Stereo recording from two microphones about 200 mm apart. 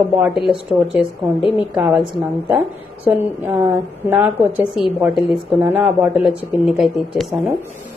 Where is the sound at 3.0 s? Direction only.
10° right (ahead or behind).